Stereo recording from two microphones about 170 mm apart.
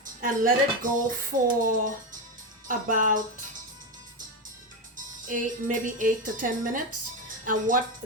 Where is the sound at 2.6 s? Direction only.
50° right (ahead or behind).